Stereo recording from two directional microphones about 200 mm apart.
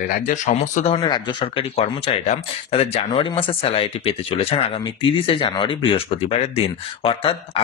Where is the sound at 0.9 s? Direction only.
20° left (ahead or behind).